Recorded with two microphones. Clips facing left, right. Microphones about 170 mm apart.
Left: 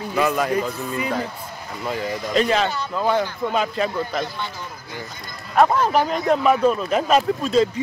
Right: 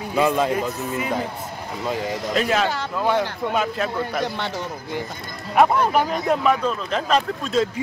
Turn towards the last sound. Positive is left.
turn(degrees=0)  # may be behind; listen again after turning